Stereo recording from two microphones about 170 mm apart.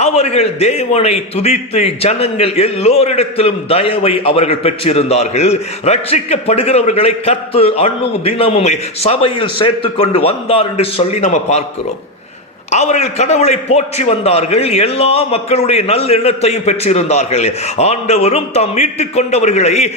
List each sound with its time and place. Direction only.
0.0 s a man's voice: 40° left (ahead or behind)
12.7 s a man's voice: 40° left (ahead or behind)